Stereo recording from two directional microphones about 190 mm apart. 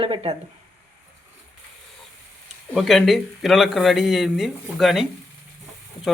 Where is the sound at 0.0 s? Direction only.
30° right (ahead or behind).